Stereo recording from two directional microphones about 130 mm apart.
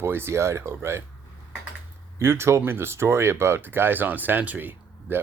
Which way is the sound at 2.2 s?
20° right (ahead or behind).